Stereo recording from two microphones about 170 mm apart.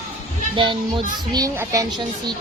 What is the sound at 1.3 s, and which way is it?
Speech, 20° right (ahead or behind).